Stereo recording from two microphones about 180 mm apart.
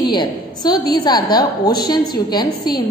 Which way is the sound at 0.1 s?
25° left (ahead or behind).